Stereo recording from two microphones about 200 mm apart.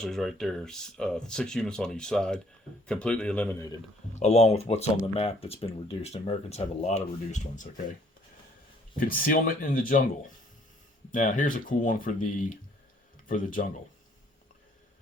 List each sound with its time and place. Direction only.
0.0 s speech: centre (ahead or behind)
4.1 s speech: 35° left (ahead or behind)
9.0 s speech: 45° left (ahead or behind)
11.1 s speech: 40° left (ahead or behind)